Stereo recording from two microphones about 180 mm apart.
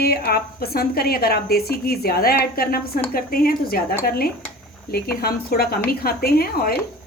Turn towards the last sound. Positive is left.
turn(degrees=55)  # may be behind; listen again after turning